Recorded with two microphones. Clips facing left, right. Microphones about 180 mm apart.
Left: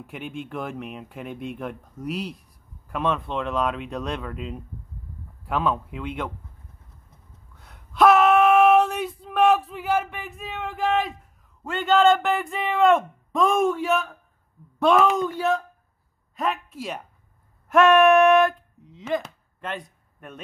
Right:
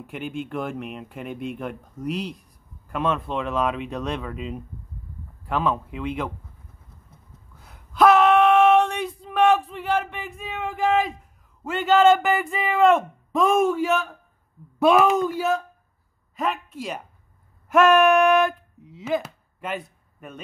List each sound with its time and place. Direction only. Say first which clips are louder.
0.0 s speech: right 3 dB; centre (ahead or behind)
7.5 s female singing: right 1 dB; centre (ahead or behind)
11.6 s speech: right 2 dB; 5° right (ahead or behind)